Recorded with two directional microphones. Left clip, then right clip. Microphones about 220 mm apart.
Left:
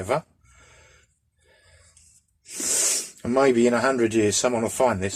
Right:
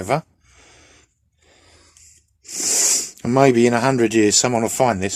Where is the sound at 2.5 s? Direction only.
50° right (ahead or behind).